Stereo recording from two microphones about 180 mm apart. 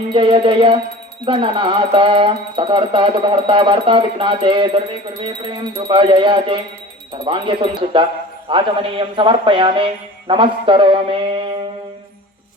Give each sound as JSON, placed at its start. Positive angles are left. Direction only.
{"t": 0.1, "sound": "speech", "side_deg": -30}